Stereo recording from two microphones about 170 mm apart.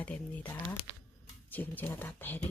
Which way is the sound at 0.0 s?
10° left (ahead or behind).